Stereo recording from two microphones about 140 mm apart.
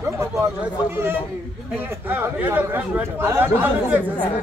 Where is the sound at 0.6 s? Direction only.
15° right (ahead or behind).